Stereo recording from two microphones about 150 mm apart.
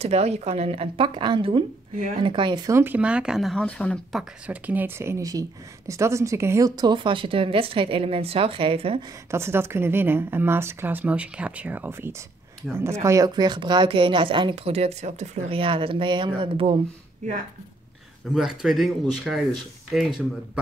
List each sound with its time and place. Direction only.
0.0 s a woman's voice: 45° right (ahead or behind); by 2.8 s 25° right (ahead or behind)
2.8 s speech: 10° right (ahead or behind); by 9.0 s 40° right (ahead or behind)
9.3 s a woman's voice: 15° right (ahead or behind); by 16.8 s 35° right (ahead or behind)
17.2 s speech: 50° right (ahead or behind)
18.3 s speech: 5° right (ahead or behind)